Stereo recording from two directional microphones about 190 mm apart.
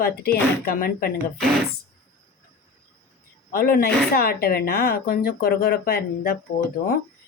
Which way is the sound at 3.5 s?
50° left (ahead or behind).